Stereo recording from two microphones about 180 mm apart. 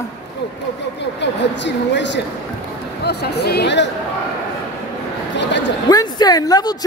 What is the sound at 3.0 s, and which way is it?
Speech, 65° left (ahead or behind).